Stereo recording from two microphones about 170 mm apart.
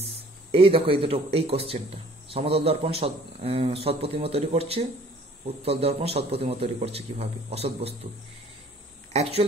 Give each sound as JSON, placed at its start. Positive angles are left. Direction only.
{"t": 0.5, "sound": "a man's voice", "side_deg": -30}
{"t": 9.1, "sound": "speech", "side_deg": -40}